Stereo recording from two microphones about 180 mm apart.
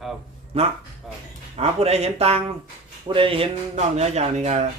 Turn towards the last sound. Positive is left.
turn(degrees=-40)  # may be behind; listen again after turning